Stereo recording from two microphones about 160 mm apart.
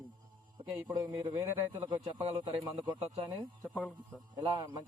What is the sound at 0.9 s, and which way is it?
Speech, 25° right (ahead or behind).